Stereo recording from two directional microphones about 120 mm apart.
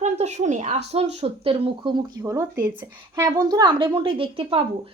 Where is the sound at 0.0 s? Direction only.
75° right (ahead or behind); by 2.0 s 45° right (ahead or behind).